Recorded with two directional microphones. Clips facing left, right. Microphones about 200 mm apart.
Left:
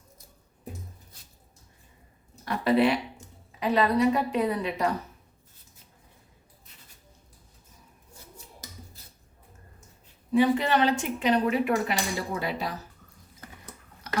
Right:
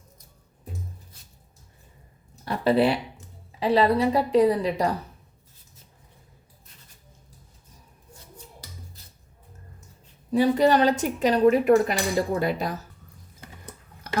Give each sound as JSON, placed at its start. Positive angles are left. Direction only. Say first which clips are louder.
{"t": 2.4, "sound": "a sound", "louder": "right 2 dB", "side_deg": -30}
{"t": 3.6, "sound": "speech", "louder": "right 3 dB", "side_deg": -30}
{"t": 10.3, "sound": "speech", "louder": "right 3 dB", "side_deg": -40}